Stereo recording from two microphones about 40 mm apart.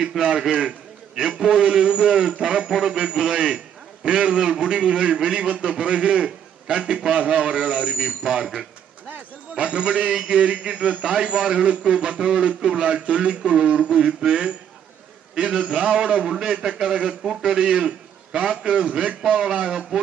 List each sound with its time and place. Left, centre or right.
0.2 s a man's voice: centre
9.6 s a man's voice: right
19.7 s a man's voice: centre